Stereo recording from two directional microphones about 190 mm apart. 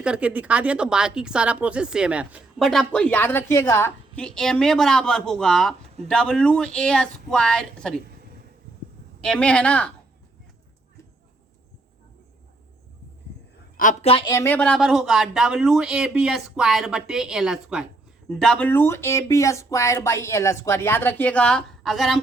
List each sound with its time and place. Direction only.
0.0 s speech: 5° right (ahead or behind)
9.2 s speech: 5° left (ahead or behind)
14.0 s a woman's voice: 30° left (ahead or behind)
14.3 s speech: 10° left (ahead or behind)